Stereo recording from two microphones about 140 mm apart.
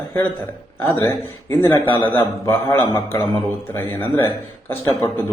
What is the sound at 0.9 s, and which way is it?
Speech, 15° left (ahead or behind).